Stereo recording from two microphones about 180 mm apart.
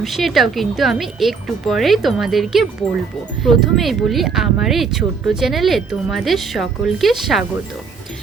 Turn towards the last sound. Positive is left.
turn(degrees=0)  # may be behind; listen again after turning